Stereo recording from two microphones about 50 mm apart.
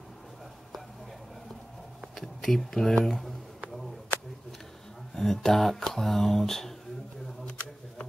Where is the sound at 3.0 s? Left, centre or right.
Centre.